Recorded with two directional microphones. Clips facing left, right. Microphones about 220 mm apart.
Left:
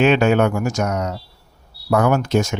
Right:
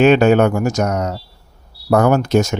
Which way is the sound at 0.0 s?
40° right (ahead or behind).